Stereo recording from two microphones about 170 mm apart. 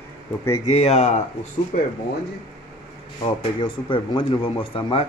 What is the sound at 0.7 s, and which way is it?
Speech, 40° left (ahead or behind).